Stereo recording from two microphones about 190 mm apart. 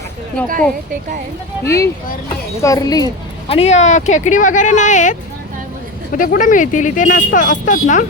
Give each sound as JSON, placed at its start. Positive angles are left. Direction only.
{"t": 0.4, "sound": "speech", "side_deg": 5}
{"t": 1.6, "sound": "speech", "side_deg": 15}
{"t": 3.5, "sound": "speech", "side_deg": 35}
{"t": 6.1, "sound": "speech", "side_deg": 45}